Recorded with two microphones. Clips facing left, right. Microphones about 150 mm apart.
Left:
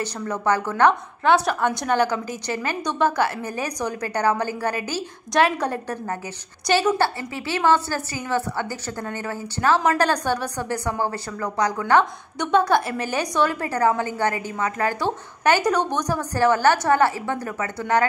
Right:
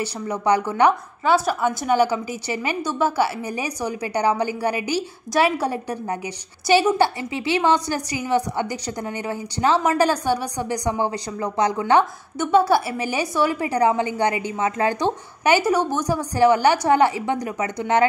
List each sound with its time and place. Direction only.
0.0 s a woman's voice: 15° right (ahead or behind)
11.8 s a woman's voice: 10° right (ahead or behind)